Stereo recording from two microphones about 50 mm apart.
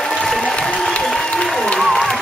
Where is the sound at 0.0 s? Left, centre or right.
Centre.